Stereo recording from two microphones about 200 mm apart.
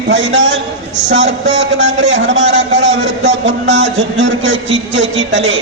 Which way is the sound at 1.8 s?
65° right (ahead or behind).